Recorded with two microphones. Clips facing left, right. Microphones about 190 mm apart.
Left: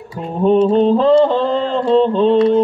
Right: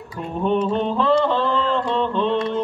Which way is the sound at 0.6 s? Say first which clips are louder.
Left 9 dB; 35° left (ahead or behind).